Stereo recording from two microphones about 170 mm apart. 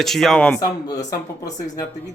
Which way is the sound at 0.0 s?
Centre (ahead or behind).